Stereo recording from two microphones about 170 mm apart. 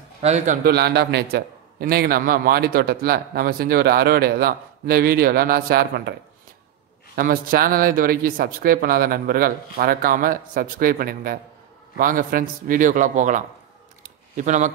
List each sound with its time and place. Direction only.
0.2 s a man's voice: 40° right (ahead or behind)
0.7 s a man's voice: 75° right (ahead or behind)
7.2 s a man's voice: 60° right (ahead or behind)
14.0 s a sound: 45° right (ahead or behind)